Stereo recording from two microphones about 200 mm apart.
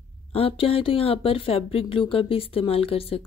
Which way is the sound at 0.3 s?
30° left (ahead or behind).